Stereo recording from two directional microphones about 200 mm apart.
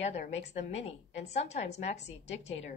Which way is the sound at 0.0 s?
35° left (ahead or behind).